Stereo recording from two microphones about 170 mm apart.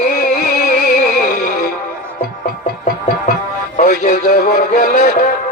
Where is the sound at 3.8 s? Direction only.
50° left (ahead or behind).